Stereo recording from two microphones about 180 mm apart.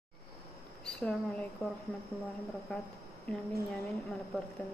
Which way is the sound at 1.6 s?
15° left (ahead or behind).